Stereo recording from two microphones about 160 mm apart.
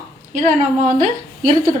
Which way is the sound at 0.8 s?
55° right (ahead or behind).